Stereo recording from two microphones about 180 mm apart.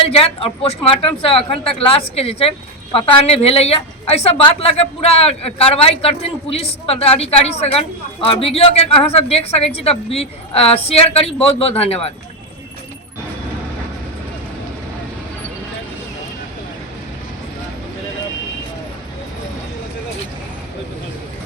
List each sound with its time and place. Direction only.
0.0 s a woman's voice: 30° left (ahead or behind)